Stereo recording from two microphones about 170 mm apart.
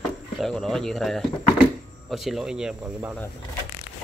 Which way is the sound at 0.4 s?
5° left (ahead or behind).